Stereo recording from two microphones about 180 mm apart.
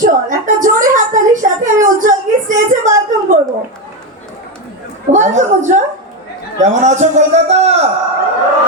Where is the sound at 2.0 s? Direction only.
45° right (ahead or behind).